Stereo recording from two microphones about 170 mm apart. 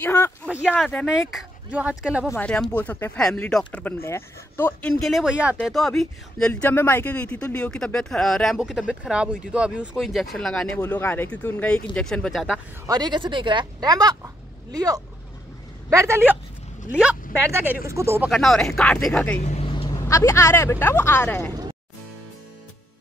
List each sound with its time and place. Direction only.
0.0 s speech: 15° left (ahead or behind)
0.5 s speech: 5° right (ahead or behind)
2.3 s speech: 5° left (ahead or behind)
12.8 s speech: 25° right (ahead or behind)
18.3 s speech: centre (ahead or behind)
19.4 s speech: 35° left (ahead or behind); by 21.5 s 15° left (ahead or behind)